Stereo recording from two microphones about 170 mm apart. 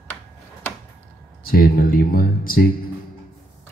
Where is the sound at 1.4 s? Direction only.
60° left (ahead or behind).